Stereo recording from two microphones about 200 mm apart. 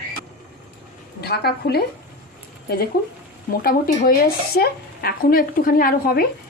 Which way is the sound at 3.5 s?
45° left (ahead or behind).